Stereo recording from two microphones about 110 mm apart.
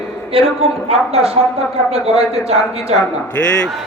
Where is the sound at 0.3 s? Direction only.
60° right (ahead or behind).